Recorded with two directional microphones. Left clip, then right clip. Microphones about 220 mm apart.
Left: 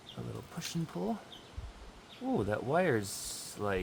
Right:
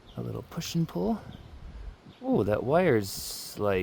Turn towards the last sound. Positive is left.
turn(degrees=-40)  # may be behind; listen again after turning